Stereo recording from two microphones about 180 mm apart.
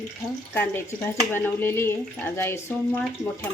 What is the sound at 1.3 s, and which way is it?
Speech, 10° left (ahead or behind).